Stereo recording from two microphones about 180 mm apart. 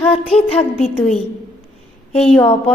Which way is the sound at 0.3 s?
35° left (ahead or behind).